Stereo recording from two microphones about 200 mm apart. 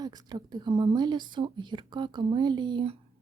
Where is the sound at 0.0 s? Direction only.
20° right (ahead or behind).